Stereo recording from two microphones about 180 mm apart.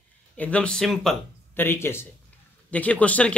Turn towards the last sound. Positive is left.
turn(degrees=5)  # may be behind; listen again after turning